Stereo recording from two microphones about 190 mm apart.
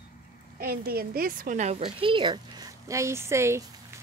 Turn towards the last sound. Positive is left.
turn(degrees=-15)  # may be behind; listen again after turning